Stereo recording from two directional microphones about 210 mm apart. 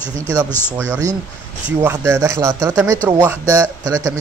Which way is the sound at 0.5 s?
10° left (ahead or behind).